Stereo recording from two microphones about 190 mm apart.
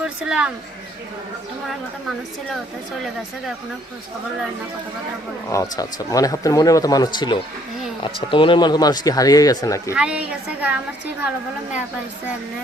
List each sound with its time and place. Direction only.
0.0 s speech: 5° right (ahead or behind)
5.5 s a man's voice: 15° left (ahead or behind)
9.9 s a woman's voice: 5° right (ahead or behind)